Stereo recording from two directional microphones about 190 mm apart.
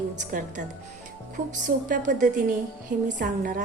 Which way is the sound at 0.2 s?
45° right (ahead or behind).